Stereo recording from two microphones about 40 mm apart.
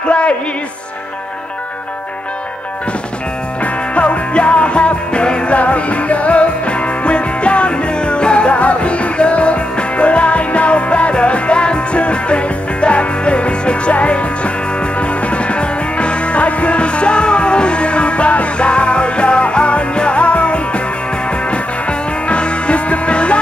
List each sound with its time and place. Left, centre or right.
0.0 s music: left
3.6 s music: left